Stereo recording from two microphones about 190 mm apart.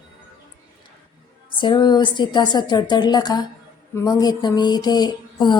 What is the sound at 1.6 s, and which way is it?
Speech, 25° left (ahead or behind).